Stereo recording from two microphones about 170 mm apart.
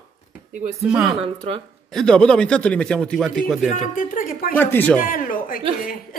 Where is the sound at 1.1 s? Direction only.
35° right (ahead or behind).